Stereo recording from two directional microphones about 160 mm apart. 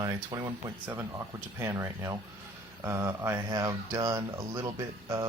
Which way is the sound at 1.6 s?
15° right (ahead or behind).